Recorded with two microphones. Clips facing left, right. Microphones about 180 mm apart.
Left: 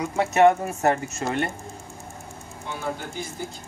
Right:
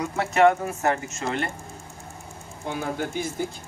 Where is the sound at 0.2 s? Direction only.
20° left (ahead or behind).